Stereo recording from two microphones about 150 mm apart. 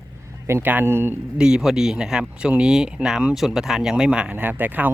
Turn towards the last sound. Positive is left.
turn(degrees=-10)  # may be behind; listen again after turning